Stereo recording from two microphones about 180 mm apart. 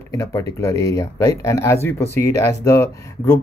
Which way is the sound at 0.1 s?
20° left (ahead or behind).